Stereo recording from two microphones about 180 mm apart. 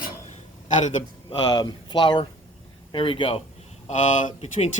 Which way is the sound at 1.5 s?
25° left (ahead or behind).